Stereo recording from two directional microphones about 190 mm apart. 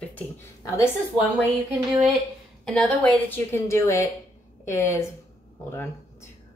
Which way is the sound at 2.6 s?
Centre (ahead or behind).